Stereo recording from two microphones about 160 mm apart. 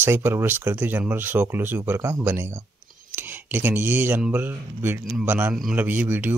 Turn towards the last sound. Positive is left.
turn(degrees=-10)  # may be behind; listen again after turning